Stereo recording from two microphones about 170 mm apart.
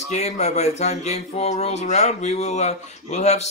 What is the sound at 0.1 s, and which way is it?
Speech, 40° left (ahead or behind).